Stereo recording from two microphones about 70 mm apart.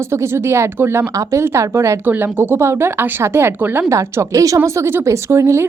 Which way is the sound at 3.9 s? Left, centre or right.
Right.